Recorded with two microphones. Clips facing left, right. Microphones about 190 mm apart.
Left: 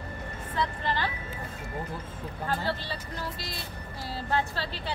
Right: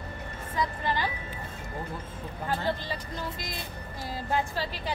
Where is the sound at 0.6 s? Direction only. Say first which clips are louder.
Right 1 dB; 15° right (ahead or behind).